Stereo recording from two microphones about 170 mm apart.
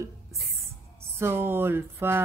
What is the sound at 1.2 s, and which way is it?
Speech, 15° right (ahead or behind).